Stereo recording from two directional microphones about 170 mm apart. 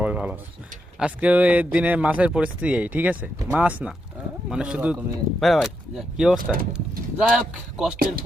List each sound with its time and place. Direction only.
0.0 s a sound: 10° right (ahead or behind)
0.9 s a man's voice: 5° right (ahead or behind)
6.4 s speech: 55° right (ahead or behind)
6.7 s speech: 5° right (ahead or behind)